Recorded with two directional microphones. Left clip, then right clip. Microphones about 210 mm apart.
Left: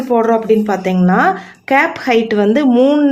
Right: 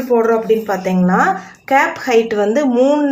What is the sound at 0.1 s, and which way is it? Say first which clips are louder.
Speech: left 1 dB; 50° left (ahead or behind).